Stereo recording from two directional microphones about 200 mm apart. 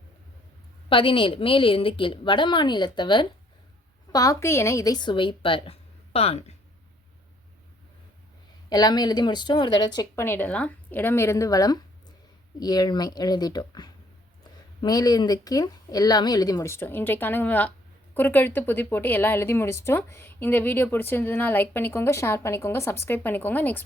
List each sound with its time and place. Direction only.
0.9 s speech: 25° left (ahead or behind)
8.7 s a woman's voice: 20° left (ahead or behind)